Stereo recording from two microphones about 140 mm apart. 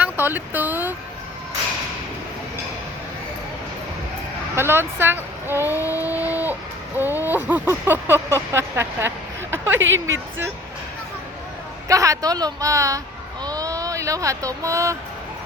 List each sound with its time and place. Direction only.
0.0 s speech: 15° right (ahead or behind)
4.5 s speech: 15° right (ahead or behind)
5.9 s a sound: 15° right (ahead or behind)
11.9 s a woman's voice: 25° right (ahead or behind)